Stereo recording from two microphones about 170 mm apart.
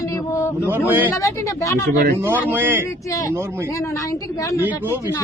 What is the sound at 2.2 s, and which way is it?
Speech, 10° right (ahead or behind).